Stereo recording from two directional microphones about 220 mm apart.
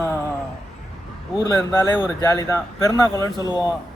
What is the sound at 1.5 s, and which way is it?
Speech, 10° left (ahead or behind).